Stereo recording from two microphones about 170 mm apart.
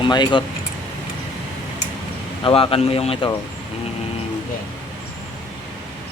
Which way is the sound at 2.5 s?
35° left (ahead or behind).